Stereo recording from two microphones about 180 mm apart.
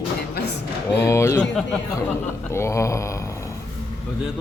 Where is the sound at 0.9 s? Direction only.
15° left (ahead or behind).